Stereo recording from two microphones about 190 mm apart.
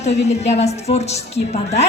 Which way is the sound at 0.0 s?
35° left (ahead or behind).